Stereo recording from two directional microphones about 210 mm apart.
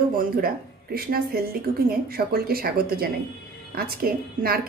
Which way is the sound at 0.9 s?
45° right (ahead or behind).